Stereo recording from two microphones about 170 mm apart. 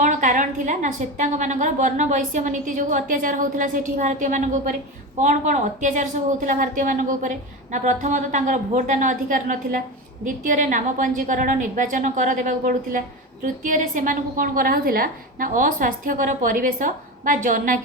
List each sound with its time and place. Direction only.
0.0 s a woman's voice: 45° right (ahead or behind)